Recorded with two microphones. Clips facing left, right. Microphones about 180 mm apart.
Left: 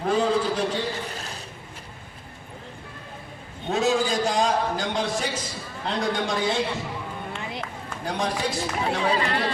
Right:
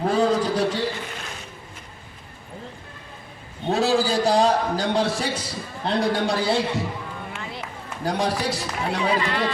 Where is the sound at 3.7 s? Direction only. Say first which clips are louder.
Right 2 dB; 35° right (ahead or behind).